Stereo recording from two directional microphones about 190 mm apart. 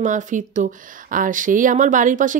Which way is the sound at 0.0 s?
40° right (ahead or behind).